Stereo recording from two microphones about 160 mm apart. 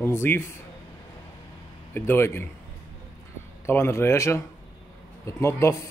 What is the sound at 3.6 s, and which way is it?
Speech, 15° left (ahead or behind).